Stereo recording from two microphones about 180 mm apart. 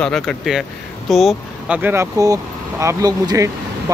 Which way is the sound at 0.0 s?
5° left (ahead or behind).